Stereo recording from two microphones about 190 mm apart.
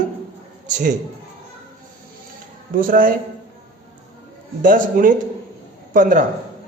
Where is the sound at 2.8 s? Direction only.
45° right (ahead or behind).